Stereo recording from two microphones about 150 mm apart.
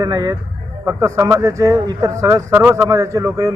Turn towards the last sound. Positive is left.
turn(degrees=-20)  # may be behind; listen again after turning